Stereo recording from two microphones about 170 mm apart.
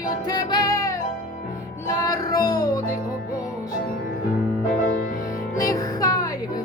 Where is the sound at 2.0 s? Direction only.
20° left (ahead or behind).